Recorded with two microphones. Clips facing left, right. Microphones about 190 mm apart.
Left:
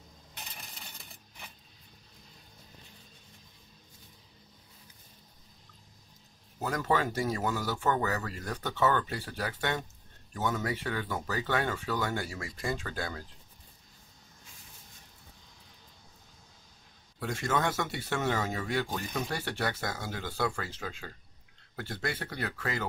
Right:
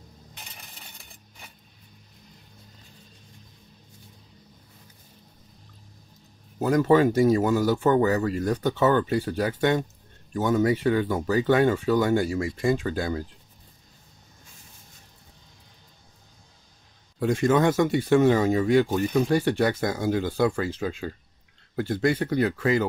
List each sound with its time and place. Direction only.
6.6 s speech: 20° right (ahead or behind)
17.2 s speech: 15° right (ahead or behind)